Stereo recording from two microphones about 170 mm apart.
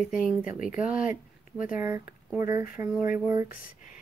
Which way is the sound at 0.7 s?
5° right (ahead or behind).